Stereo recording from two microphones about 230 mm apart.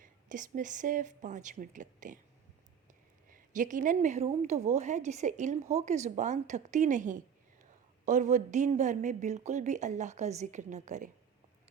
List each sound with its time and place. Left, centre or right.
0.0 s a woman's voice: right
3.2 s a woman's voice: right